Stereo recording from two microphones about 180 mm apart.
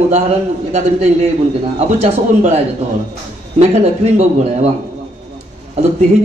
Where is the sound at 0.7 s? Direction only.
40° right (ahead or behind).